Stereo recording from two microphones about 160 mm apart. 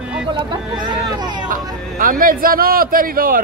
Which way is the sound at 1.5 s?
60° right (ahead or behind).